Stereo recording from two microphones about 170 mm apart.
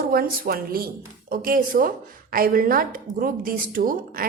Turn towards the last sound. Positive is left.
turn(degrees=-55)  # may be behind; listen again after turning